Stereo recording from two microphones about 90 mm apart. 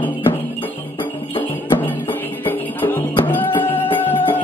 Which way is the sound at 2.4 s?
20° left (ahead or behind).